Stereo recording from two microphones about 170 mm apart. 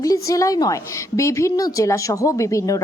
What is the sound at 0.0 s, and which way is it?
A woman's voice, 20° left (ahead or behind).